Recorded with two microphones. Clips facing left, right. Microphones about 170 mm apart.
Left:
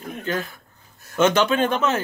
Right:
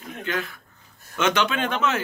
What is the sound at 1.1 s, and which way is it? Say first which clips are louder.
Speech: left 5 dB; 40° left (ahead or behind).